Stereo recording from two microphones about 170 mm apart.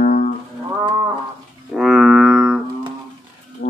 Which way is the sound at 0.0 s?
50° left (ahead or behind).